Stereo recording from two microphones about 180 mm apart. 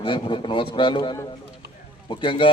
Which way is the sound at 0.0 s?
25° left (ahead or behind).